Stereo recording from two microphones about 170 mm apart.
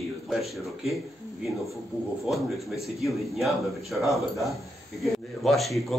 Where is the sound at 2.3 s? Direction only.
Centre (ahead or behind).